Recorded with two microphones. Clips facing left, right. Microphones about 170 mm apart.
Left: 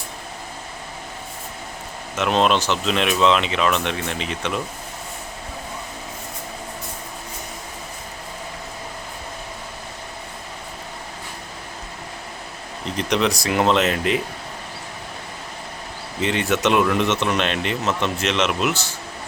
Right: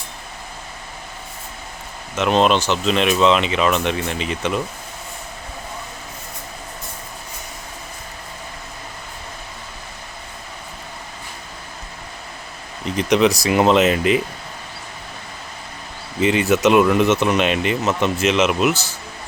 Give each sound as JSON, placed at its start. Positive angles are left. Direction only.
{"t": 2.1, "sound": "speech", "side_deg": 0}
{"t": 13.0, "sound": "speech", "side_deg": -5}
{"t": 16.2, "sound": "speech", "side_deg": -5}